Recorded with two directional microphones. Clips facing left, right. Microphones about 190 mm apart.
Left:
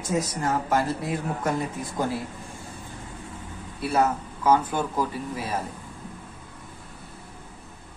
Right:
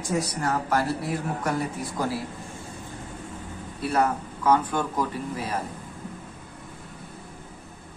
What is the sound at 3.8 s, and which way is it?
Speech, 5° left (ahead or behind).